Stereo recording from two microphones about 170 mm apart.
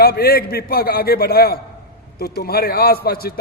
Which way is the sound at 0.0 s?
65° left (ahead or behind).